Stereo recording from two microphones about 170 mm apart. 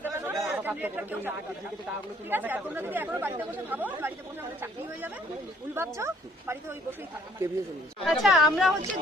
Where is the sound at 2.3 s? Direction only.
10° right (ahead or behind).